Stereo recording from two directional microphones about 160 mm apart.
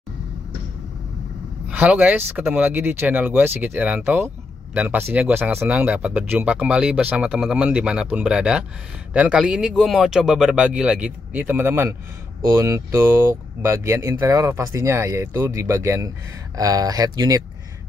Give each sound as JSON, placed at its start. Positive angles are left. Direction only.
{"t": 1.7, "sound": "speech", "side_deg": -10}